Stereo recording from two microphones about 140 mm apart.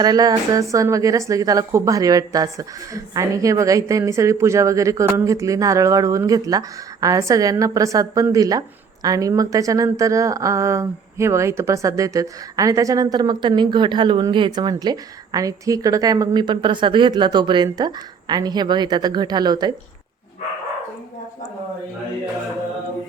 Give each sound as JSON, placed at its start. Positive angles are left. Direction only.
{"t": 0.0, "sound": "a woman's voice", "side_deg": -30}